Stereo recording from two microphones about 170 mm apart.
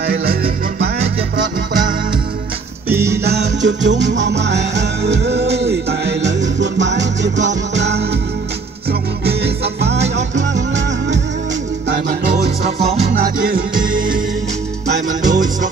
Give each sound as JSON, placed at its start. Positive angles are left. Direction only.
{"t": 0.0, "sound": "music", "side_deg": -60}
{"t": 2.9, "sound": "music", "side_deg": -15}
{"t": 3.3, "sound": "music", "side_deg": -85}
{"t": 9.2, "sound": "music", "side_deg": -70}
{"t": 12.6, "sound": "music", "side_deg": -40}
{"t": 13.2, "sound": "music", "side_deg": -55}
{"t": 15.2, "sound": "music", "side_deg": -50}